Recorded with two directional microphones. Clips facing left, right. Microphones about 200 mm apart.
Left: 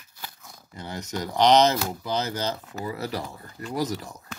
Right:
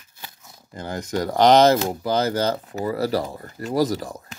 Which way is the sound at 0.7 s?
50° right (ahead or behind).